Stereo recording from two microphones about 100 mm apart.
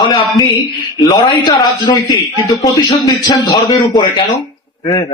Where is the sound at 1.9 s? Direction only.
55° left (ahead or behind).